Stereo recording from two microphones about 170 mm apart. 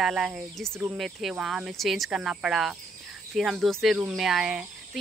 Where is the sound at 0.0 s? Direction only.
5° right (ahead or behind).